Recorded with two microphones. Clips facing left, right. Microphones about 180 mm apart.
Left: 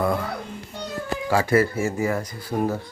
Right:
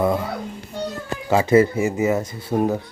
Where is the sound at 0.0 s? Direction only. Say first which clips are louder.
Right 3 dB; 20° right (ahead or behind).